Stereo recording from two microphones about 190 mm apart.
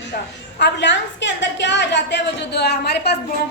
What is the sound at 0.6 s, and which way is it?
A woman's voice, 70° left (ahead or behind).